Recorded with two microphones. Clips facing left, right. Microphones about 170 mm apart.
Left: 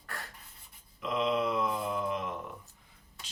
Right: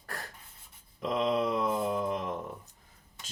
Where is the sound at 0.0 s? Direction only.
40° right (ahead or behind).